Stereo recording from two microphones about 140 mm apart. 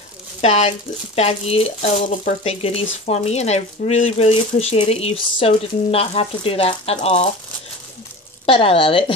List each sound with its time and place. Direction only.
0.4 s speech: 55° left (ahead or behind)
8.5 s speech: 40° left (ahead or behind)